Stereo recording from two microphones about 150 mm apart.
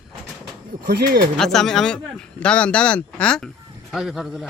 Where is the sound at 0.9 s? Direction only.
90° right.